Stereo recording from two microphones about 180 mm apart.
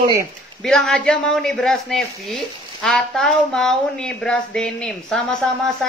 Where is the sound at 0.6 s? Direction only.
5° left (ahead or behind).